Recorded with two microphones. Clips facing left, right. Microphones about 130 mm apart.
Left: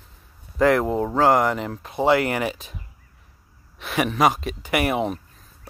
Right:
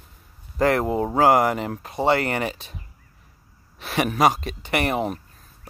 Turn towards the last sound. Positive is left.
turn(degrees=0)  # may be behind; listen again after turning